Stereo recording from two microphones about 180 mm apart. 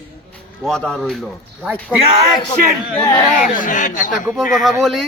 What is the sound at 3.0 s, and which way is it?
Speech, 25° left (ahead or behind).